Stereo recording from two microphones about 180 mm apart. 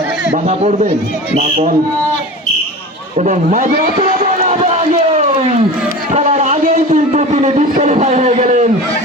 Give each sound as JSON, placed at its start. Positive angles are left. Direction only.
{"t": 0.4, "sound": "speech", "side_deg": -35}
{"t": 3.2, "sound": "a man's voice", "side_deg": -45}
{"t": 4.4, "sound": "run", "side_deg": -35}
{"t": 6.1, "sound": "a sound", "side_deg": -40}